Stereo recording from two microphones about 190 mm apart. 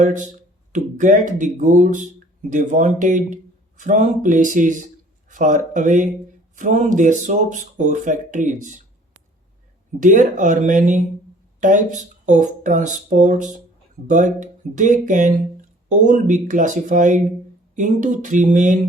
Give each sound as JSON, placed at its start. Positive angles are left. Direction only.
{"t": 0.0, "sound": "speech", "side_deg": -40}
{"t": 10.0, "sound": "speech", "side_deg": -40}